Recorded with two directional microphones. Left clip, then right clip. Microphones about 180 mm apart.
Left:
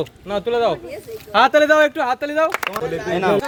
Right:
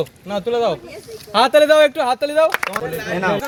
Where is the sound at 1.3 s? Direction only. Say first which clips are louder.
Right 1 dB; 40° right (ahead or behind).